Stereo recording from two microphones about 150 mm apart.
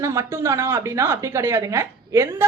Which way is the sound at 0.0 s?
20° right (ahead or behind).